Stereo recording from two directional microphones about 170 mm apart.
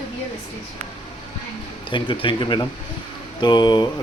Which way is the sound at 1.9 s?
30° left (ahead or behind).